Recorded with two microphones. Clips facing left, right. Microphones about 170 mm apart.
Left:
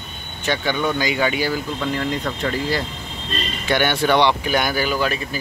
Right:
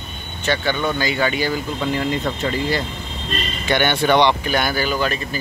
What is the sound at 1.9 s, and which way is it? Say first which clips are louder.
Speech: right 3 dB; 5° right (ahead or behind).